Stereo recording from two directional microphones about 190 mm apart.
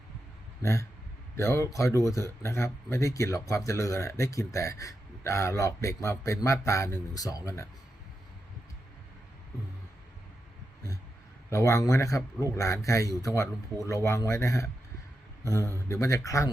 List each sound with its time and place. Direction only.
0.6 s speech: 15° left (ahead or behind)
11.5 s speech: 15° left (ahead or behind)
15.9 s speech: 15° left (ahead or behind)